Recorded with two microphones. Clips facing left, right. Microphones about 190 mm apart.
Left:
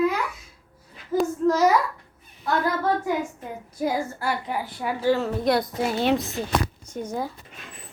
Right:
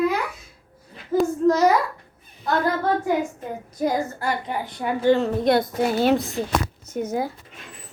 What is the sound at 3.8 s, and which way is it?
A woman's voice, 5° left (ahead or behind).